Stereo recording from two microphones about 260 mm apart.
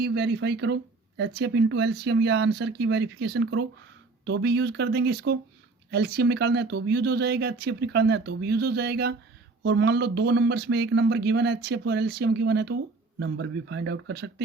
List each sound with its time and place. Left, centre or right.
0.0 s speech: right